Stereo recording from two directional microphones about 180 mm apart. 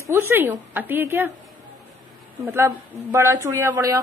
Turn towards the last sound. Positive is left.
turn(degrees=-15)  # may be behind; listen again after turning